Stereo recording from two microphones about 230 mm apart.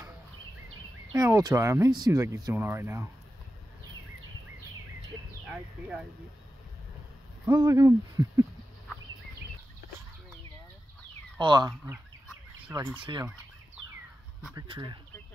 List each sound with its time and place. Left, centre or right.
1.2 s speech: centre
5.5 s speech: centre
7.4 s speech: centre
11.3 s speech: centre
13.0 s speech: centre
14.5 s speech: centre